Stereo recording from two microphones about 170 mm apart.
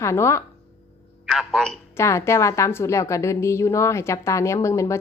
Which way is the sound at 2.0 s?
15° left (ahead or behind).